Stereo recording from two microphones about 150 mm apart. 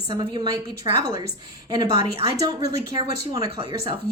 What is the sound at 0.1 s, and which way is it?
Speech, 30° right (ahead or behind).